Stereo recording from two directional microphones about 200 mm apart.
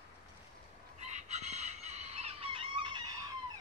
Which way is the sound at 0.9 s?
35° right (ahead or behind).